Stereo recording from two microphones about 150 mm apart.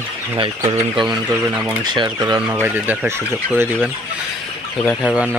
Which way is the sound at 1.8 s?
30° right (ahead or behind).